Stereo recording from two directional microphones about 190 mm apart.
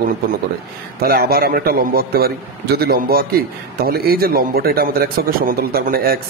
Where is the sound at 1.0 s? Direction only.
50° right (ahead or behind).